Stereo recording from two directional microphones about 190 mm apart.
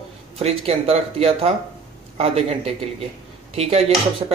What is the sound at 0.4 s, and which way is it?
Speech, 35° right (ahead or behind).